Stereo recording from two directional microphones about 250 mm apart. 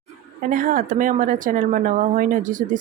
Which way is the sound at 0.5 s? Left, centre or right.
Right.